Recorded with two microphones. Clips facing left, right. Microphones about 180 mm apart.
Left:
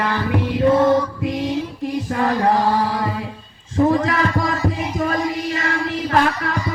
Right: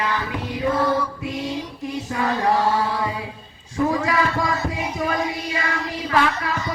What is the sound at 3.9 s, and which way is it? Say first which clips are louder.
Speech: left 3 dB; 50° left (ahead or behind).